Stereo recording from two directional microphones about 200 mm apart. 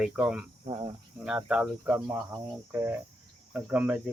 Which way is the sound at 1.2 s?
5° right (ahead or behind).